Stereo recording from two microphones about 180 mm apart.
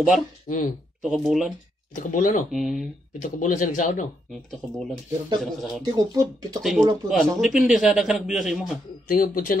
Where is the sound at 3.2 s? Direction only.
45° left (ahead or behind).